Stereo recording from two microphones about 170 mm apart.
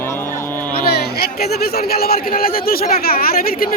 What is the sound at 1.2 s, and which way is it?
Speech, 65° left (ahead or behind).